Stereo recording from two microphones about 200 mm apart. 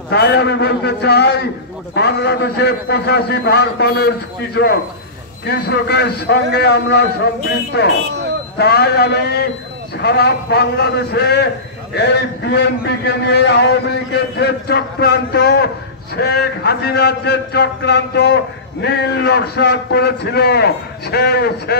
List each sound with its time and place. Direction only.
0.1 s a man's voice: 55° left (ahead or behind)